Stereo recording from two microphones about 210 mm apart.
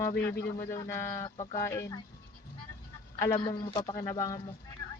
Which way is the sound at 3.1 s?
20° left (ahead or behind).